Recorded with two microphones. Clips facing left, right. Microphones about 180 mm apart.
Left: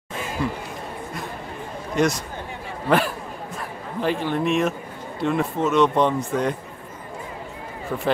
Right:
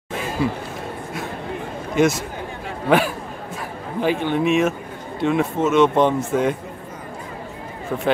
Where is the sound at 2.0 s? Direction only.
5° right (ahead or behind).